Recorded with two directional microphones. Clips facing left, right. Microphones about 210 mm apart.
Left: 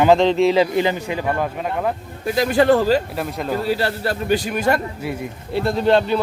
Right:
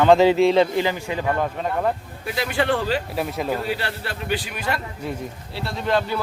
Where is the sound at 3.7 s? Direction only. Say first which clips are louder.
Left 7 dB; 40° left (ahead or behind).